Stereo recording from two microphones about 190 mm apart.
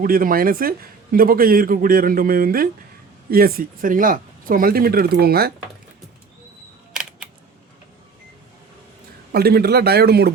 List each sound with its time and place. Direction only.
0.0 s speech: 50° right (ahead or behind)
6.9 s camera: 5° right (ahead or behind)
9.3 s a man's voice: 55° right (ahead or behind)